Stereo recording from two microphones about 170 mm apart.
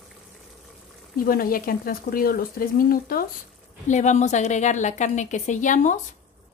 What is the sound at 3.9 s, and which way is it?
A woman's voice, 45° left (ahead or behind).